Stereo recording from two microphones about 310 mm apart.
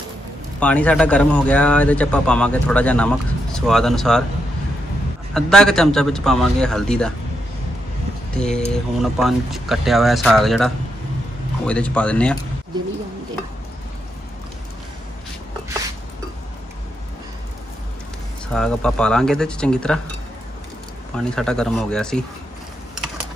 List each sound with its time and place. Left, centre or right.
0.6 s speech: centre
5.3 s speech: centre
8.4 s speech: centre
18.5 s speech: centre
21.2 s speech: centre